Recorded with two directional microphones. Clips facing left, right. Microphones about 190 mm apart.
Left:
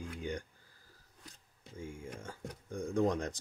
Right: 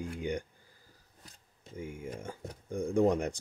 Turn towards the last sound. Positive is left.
turn(degrees=-10)  # may be behind; listen again after turning